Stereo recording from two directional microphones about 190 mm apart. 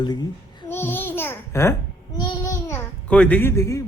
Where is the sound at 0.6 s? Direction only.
10° left (ahead or behind).